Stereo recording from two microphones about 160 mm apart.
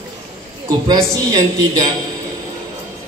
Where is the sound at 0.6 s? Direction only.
25° right (ahead or behind).